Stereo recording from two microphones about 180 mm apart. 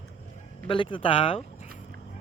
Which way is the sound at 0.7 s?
30° left (ahead or behind).